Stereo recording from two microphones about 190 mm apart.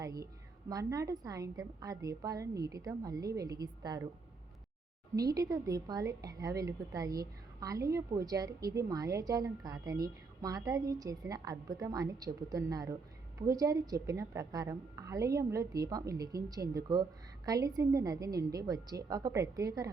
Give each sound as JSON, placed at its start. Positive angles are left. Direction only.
{"t": 0.0, "sound": "a woman's voice", "side_deg": -20}
{"t": 5.1, "sound": "speech", "side_deg": -20}